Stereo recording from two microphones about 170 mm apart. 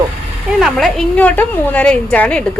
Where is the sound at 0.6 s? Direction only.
Centre (ahead or behind).